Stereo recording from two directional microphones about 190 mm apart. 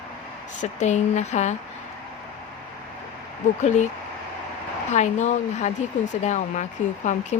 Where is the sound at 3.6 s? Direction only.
40° left (ahead or behind).